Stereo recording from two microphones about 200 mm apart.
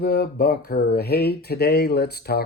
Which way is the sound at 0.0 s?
50° left (ahead or behind).